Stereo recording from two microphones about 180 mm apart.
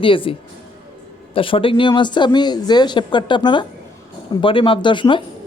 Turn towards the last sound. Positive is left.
turn(degrees=25)  # may be behind; listen again after turning